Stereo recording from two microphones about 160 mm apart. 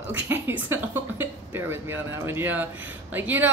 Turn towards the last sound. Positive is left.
turn(degrees=-10)  # may be behind; listen again after turning